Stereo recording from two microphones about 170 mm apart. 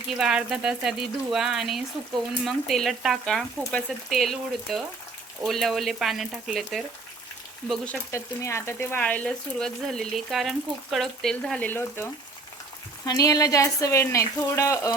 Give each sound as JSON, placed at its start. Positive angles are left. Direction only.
{"t": 0.1, "sound": "frying", "side_deg": -5}
{"t": 8.1, "sound": "speech", "side_deg": 15}
{"t": 10.9, "sound": "frying", "side_deg": 0}
{"t": 13.1, "sound": "speech", "side_deg": 20}